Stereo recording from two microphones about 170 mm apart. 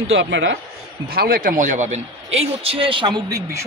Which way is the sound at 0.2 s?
90° right.